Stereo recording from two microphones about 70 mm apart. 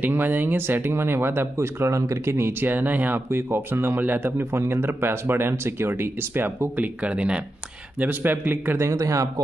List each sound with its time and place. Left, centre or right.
0.0 s speech: right
2.7 s speech: right
7.0 s speech: centre
8.0 s speech: right
8.7 s speech: right